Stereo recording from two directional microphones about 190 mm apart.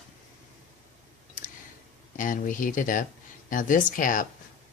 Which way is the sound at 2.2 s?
45° left (ahead or behind).